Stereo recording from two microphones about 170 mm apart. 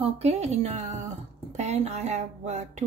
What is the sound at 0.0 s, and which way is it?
Speech, 40° right (ahead or behind).